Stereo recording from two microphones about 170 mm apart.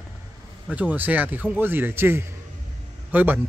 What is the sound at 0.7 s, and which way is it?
Speech, 10° right (ahead or behind).